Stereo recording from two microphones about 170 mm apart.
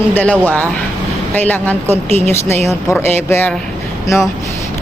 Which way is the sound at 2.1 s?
35° right (ahead or behind).